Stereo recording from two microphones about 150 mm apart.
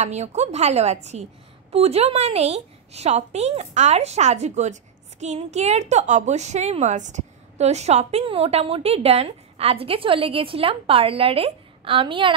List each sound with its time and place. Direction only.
0.0 s a woman's voice: 50° right (ahead or behind)